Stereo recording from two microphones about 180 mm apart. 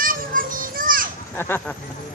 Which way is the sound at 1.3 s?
10° left (ahead or behind).